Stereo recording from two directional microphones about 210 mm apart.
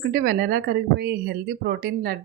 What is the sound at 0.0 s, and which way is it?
Speech, 45° right (ahead or behind).